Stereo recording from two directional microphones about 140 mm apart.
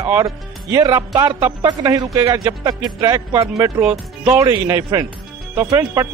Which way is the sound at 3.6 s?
10° right (ahead or behind).